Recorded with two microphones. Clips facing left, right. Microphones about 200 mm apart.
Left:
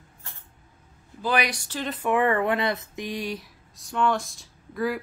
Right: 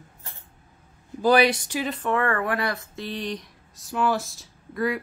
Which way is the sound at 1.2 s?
35° right (ahead or behind).